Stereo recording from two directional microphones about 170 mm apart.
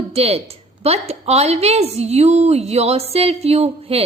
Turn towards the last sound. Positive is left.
turn(degrees=-35)  # may be behind; listen again after turning